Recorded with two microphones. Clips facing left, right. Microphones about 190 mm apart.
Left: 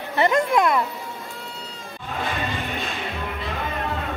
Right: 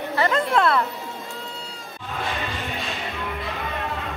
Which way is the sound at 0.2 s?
15° left (ahead or behind).